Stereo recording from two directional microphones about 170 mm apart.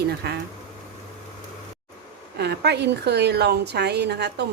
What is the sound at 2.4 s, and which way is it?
A woman's voice, 80° right.